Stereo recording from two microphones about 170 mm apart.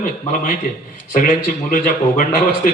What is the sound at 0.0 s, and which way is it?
Speech, 50° left (ahead or behind).